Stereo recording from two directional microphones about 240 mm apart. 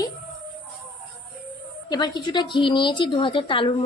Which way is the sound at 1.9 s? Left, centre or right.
Centre.